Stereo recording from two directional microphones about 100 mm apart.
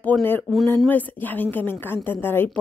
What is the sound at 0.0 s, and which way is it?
A woman's voice, 20° left (ahead or behind).